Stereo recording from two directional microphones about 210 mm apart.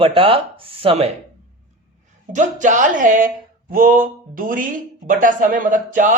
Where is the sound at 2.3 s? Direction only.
35° right (ahead or behind).